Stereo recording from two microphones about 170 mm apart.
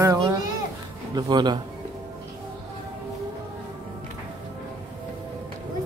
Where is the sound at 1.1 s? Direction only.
25° right (ahead or behind).